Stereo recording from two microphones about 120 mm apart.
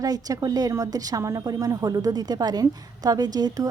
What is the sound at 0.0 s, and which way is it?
Speech, 30° right (ahead or behind).